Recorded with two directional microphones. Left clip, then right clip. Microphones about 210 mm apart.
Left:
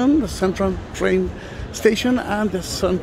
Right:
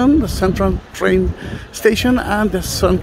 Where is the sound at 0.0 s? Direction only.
10° right (ahead or behind).